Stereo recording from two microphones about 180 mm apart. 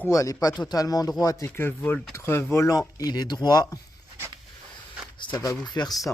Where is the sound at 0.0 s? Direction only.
15° left (ahead or behind).